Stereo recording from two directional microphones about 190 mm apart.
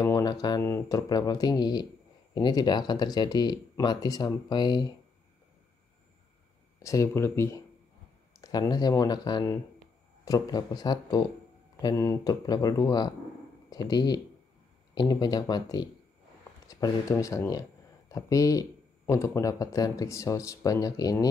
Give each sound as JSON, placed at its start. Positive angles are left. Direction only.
{"t": 0.0, "sound": "speech", "side_deg": 20}
{"t": 6.8, "sound": "speech", "side_deg": 15}